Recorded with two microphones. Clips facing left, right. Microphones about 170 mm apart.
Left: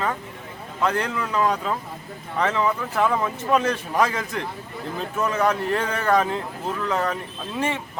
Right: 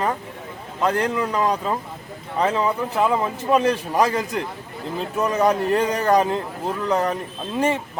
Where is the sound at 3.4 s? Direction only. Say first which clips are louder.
Right 4 dB; 30° right (ahead or behind).